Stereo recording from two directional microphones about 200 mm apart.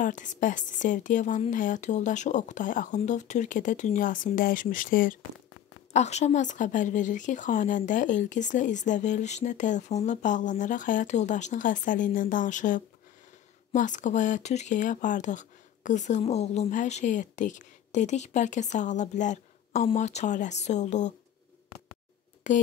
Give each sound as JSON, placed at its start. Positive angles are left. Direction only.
{"t": 0.0, "sound": "speech", "side_deg": 40}
{"t": 5.9, "sound": "speech", "side_deg": 35}
{"t": 22.5, "sound": "speech", "side_deg": 40}